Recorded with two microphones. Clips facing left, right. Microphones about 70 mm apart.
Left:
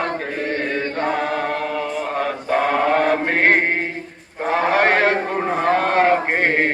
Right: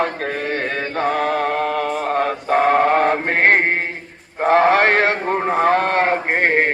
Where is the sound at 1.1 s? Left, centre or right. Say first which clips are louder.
Right 3 dB; right.